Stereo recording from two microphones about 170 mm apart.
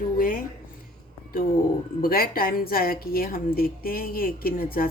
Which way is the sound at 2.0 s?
60° left (ahead or behind).